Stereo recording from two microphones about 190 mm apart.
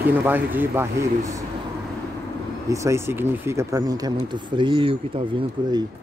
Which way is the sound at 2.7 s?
15° right (ahead or behind).